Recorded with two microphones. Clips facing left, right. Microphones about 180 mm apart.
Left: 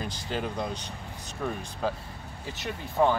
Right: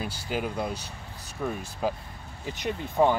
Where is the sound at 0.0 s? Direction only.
10° right (ahead or behind).